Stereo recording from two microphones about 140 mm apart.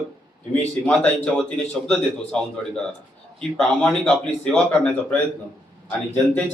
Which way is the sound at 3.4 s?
5° left (ahead or behind).